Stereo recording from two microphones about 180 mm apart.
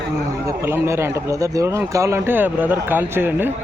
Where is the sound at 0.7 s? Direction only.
15° right (ahead or behind).